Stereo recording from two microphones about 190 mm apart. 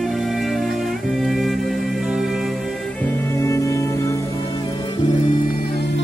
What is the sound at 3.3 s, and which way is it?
Music, 15° left (ahead or behind).